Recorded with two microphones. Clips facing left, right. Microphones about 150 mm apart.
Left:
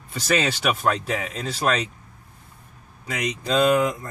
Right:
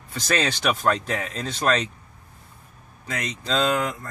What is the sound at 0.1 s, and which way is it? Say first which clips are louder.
Speech: left 2 dB; 10° left (ahead or behind).